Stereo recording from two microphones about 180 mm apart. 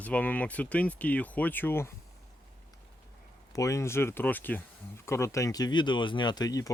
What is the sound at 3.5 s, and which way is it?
Speech, 20° left (ahead or behind).